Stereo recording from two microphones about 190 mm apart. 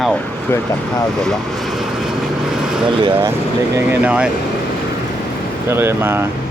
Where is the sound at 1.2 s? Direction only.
Centre (ahead or behind).